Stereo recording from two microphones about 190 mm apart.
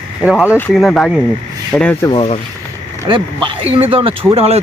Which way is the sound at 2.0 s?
30° left (ahead or behind).